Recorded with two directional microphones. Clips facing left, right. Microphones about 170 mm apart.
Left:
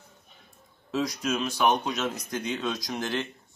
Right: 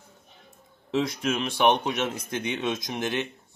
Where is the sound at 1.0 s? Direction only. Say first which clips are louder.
Right 1 dB; 25° right (ahead or behind).